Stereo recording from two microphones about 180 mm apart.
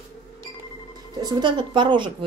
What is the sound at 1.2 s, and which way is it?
A woman's voice, 25° right (ahead or behind).